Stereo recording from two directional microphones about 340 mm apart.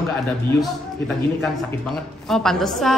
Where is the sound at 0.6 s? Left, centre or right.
Centre.